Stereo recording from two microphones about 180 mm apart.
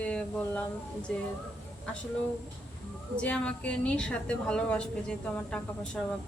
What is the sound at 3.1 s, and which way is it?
A woman's voice, 5° left (ahead or behind).